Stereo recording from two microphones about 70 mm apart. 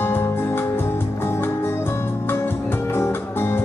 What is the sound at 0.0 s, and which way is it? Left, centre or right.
Music, left.